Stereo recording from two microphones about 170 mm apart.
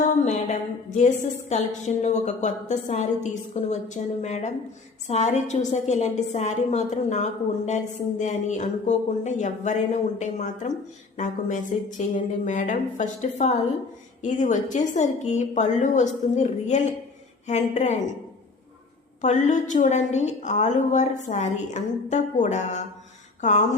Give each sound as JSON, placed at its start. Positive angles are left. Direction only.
{"t": 0.9, "sound": "a woman's voice", "side_deg": 45}
{"t": 19.2, "sound": "a woman's voice", "side_deg": 45}